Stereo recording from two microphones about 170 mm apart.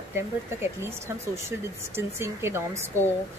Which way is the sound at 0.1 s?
15° right (ahead or behind).